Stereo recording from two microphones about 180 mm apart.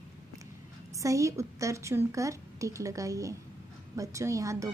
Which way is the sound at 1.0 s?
15° right (ahead or behind).